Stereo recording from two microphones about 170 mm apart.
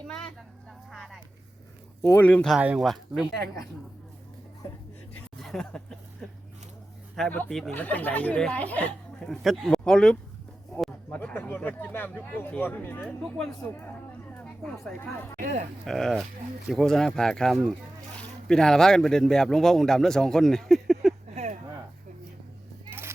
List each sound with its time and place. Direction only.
0.9 s a sound: centre (ahead or behind)
2.0 s speech: 15° left (ahead or behind)
2.6 s speech: 5° right (ahead or behind)
5.4 s speech: centre (ahead or behind)
7.2 s speech: 10° left (ahead or behind)
14.3 s a sound: 5° left (ahead or behind)
14.8 s speech: 15° left (ahead or behind)
15.4 s speech: 50° right (ahead or behind)
15.8 s speech: centre (ahead or behind)
21.3 s a sound: 45° right (ahead or behind)
22.9 s children playing: 15° right (ahead or behind)